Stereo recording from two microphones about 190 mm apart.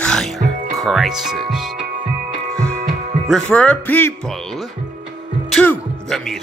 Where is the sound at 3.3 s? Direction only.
5° left (ahead or behind).